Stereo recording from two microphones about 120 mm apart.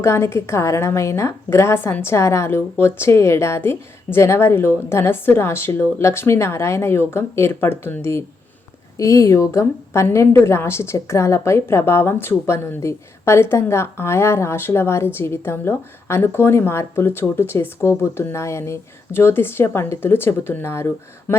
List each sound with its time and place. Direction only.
0.0 s a woman's voice: 20° left (ahead or behind)